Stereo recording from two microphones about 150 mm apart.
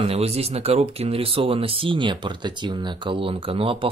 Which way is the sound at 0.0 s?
40° right (ahead or behind).